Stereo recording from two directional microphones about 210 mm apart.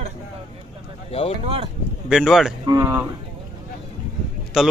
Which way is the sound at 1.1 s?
30° left (ahead or behind).